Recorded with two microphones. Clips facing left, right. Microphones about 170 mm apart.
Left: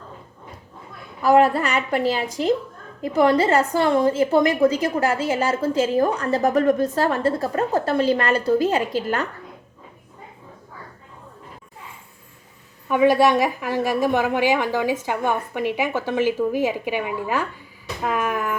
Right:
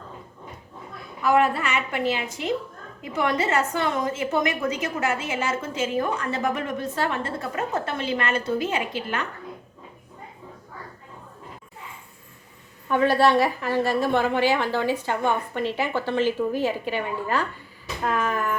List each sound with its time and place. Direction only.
1.2 s a woman's voice: 35° left (ahead or behind)
12.9 s a woman's voice: 15° left (ahead or behind)